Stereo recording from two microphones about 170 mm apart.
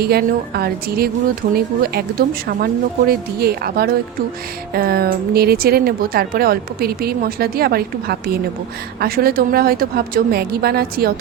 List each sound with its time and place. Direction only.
0.0 s a woman's voice: 65° right (ahead or behind)